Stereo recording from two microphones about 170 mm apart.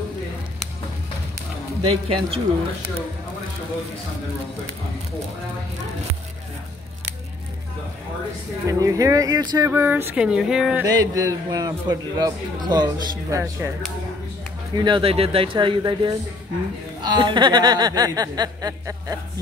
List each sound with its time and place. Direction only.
1.8 s speech: 35° right (ahead or behind)
8.6 s a man's voice: 20° right (ahead or behind)
9.7 s speech: 15° right (ahead or behind)
10.8 s a man's voice: 20° right (ahead or behind)
14.8 s a man's voice: 30° right (ahead or behind)